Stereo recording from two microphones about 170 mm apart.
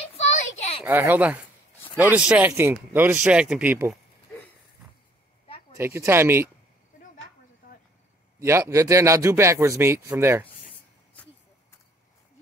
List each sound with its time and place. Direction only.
0.4 s a sound: 35° left (ahead or behind)
0.8 s a man's voice: 10° right (ahead or behind)
5.8 s a man's voice: 15° right (ahead or behind)
8.4 s a man's voice: 15° right (ahead or behind)